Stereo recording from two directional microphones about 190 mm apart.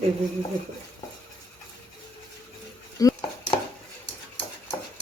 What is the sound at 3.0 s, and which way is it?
Dishes, 15° left (ahead or behind).